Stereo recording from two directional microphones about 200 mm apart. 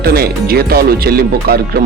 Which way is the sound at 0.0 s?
50° right (ahead or behind).